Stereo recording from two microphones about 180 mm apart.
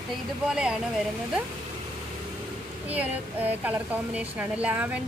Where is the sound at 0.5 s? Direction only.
5° right (ahead or behind).